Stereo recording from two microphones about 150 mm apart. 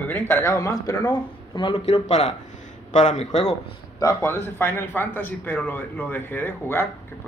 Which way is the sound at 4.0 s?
20° left (ahead or behind).